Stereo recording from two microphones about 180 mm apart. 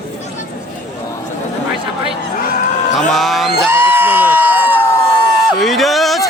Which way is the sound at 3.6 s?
15° right (ahead or behind).